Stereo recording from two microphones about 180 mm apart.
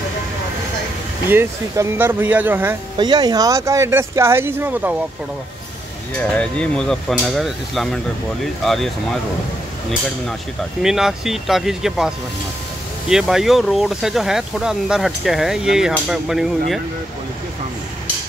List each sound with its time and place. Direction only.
1.3 s speech: 10° right (ahead or behind)
3.0 s speech: 25° right (ahead or behind)
6.1 s speech: 5° left (ahead or behind)
10.8 s speech: 5° right (ahead or behind)
13.1 s speech: 5° right (ahead or behind)